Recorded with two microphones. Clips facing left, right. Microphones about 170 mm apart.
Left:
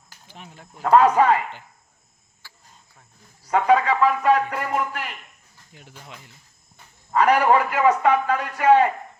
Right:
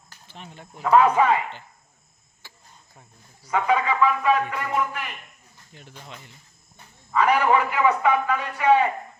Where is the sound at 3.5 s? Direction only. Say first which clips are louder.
Left 4 dB; 40° left (ahead or behind).